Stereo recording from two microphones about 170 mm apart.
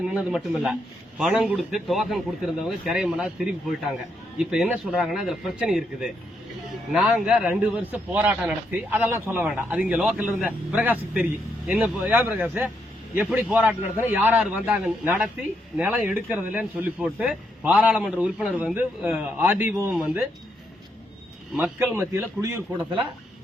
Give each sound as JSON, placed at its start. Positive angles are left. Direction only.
{"t": 0.0, "sound": "speech", "side_deg": -5}
{"t": 19.9, "sound": "speech", "side_deg": 0}
{"t": 21.5, "sound": "speech", "side_deg": -10}